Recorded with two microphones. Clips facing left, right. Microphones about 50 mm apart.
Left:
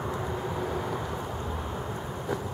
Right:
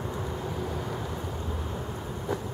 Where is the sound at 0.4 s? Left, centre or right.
Centre.